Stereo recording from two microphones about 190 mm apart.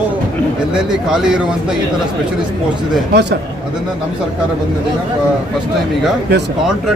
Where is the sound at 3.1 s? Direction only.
60° right (ahead or behind).